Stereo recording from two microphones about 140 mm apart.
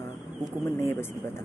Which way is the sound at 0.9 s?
15° left (ahead or behind).